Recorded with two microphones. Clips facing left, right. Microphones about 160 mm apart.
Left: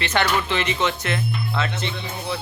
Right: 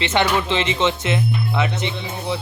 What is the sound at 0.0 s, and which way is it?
Speech, 20° right (ahead or behind).